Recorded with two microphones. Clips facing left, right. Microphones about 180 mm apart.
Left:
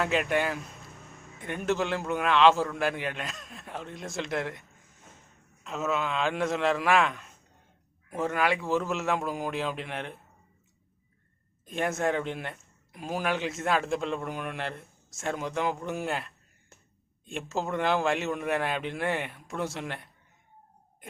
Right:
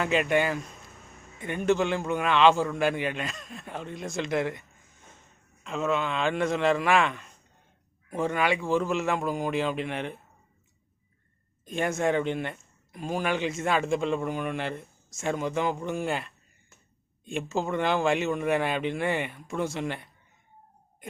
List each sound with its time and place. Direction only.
0.0 s speech: centre (ahead or behind)
5.6 s speech: 5° left (ahead or behind)
11.6 s speech: centre (ahead or behind)